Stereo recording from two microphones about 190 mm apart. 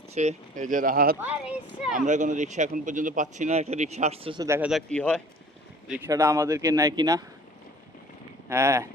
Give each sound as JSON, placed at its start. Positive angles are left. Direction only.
{"t": 0.1, "sound": "speech", "side_deg": -35}
{"t": 1.2, "sound": "a man's voice", "side_deg": -5}
{"t": 2.0, "sound": "speech", "side_deg": -40}
{"t": 4.4, "sound": "a man's voice", "side_deg": -15}
{"t": 4.7, "sound": "speech", "side_deg": 5}
{"t": 6.1, "sound": "a man's voice", "side_deg": -15}
{"t": 8.4, "sound": "a man's voice", "side_deg": -15}